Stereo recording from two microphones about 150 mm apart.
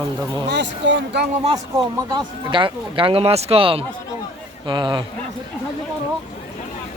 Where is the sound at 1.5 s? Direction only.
25° right (ahead or behind).